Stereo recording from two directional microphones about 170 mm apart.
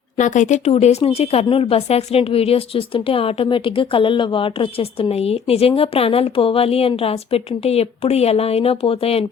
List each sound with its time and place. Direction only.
0.2 s speech: 45° left (ahead or behind)